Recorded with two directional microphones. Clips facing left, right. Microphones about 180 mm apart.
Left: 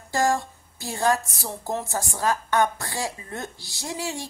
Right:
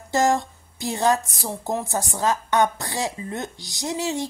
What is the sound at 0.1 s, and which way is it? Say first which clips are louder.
A woman's voice: right 3 dB; 20° right (ahead or behind).